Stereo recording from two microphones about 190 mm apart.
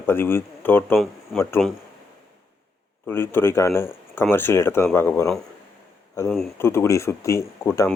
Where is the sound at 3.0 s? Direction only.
10° left (ahead or behind).